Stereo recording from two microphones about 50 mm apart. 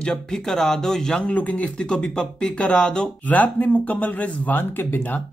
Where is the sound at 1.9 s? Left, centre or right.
Centre.